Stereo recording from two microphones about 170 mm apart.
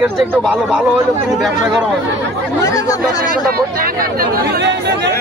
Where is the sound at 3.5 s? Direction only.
60° right (ahead or behind); by 5.1 s 80° right.